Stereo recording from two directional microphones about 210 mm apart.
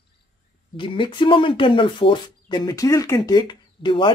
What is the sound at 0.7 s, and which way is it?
A woman's voice, 25° left (ahead or behind).